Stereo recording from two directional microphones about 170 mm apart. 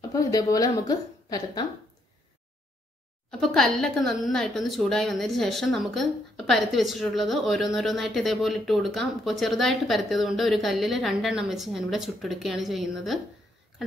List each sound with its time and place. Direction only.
0.1 s a woman's voice: 20° left (ahead or behind)
3.3 s speech: centre (ahead or behind)